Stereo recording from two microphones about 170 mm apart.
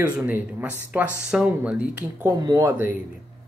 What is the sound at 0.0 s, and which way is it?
Speech, 10° right (ahead or behind).